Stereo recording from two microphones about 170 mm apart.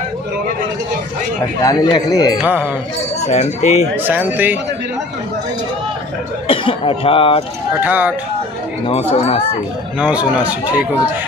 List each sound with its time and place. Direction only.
1.6 s speech: 20° left (ahead or behind)
2.4 s speech: 10° right (ahead or behind)
3.2 s speech: 40° left (ahead or behind)
3.9 s speech: 10° right (ahead or behind)
6.4 s speech: 30° left (ahead or behind)
7.8 s speech: 10° right (ahead or behind)
8.8 s speech: 35° left (ahead or behind)
9.9 s speech: 10° right (ahead or behind)